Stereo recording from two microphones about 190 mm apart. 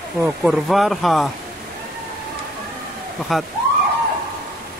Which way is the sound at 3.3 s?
Centre (ahead or behind).